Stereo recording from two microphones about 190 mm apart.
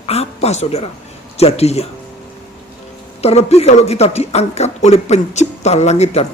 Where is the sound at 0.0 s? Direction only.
35° left (ahead or behind).